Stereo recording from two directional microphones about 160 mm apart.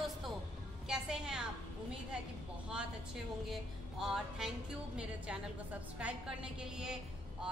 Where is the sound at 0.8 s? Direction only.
5° right (ahead or behind).